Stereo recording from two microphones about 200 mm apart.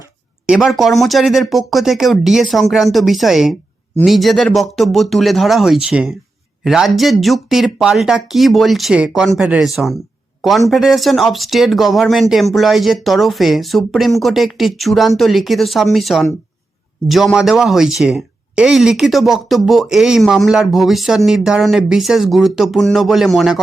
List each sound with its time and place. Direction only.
0.4 s speech: centre (ahead or behind)